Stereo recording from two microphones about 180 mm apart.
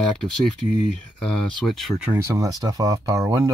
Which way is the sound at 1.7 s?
5° right (ahead or behind).